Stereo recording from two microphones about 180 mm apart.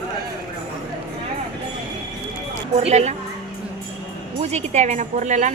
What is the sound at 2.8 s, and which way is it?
Speech, 40° right (ahead or behind).